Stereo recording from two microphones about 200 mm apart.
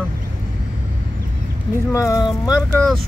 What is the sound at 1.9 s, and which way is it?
Speech, 15° left (ahead or behind).